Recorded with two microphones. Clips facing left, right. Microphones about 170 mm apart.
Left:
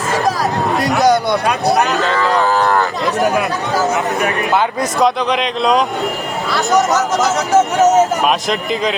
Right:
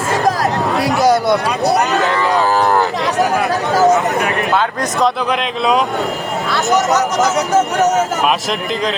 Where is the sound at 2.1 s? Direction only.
15° right (ahead or behind).